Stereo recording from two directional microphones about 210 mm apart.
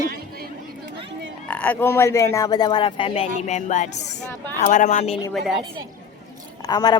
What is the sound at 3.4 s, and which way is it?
Music, 35° left (ahead or behind).